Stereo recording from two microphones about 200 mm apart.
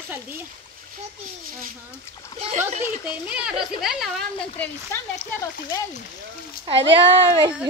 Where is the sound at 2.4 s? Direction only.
35° right (ahead or behind).